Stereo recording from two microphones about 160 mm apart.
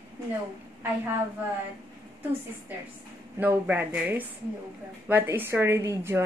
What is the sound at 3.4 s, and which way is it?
A woman's voice, 10° right (ahead or behind).